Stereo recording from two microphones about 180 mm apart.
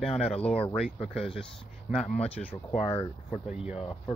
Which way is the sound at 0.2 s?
Centre (ahead or behind).